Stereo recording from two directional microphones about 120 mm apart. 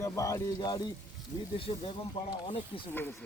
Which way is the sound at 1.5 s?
50° left (ahead or behind).